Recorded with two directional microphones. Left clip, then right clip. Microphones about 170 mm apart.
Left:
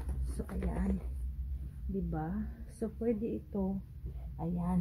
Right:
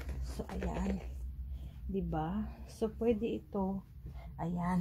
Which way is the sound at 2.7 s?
25° right (ahead or behind).